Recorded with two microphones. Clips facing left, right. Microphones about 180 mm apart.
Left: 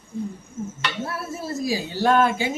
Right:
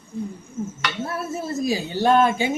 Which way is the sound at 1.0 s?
20° right (ahead or behind).